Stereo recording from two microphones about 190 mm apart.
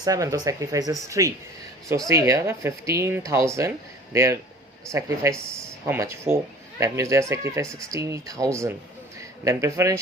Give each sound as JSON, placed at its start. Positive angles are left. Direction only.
{"t": 0.0, "sound": "a man's voice", "side_deg": -20}